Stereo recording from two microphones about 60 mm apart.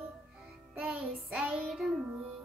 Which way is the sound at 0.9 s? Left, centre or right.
Centre.